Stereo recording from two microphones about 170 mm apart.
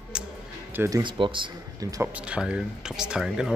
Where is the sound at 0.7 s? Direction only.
20° right (ahead or behind).